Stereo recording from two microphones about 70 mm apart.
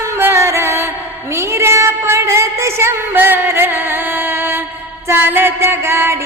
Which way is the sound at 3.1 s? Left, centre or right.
Right.